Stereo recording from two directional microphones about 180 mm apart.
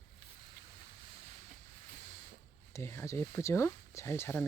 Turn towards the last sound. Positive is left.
turn(degrees=10)  # may be behind; listen again after turning